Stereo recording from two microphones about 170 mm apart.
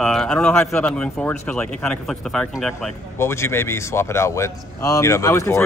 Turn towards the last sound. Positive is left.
turn(degrees=15)  # may be behind; listen again after turning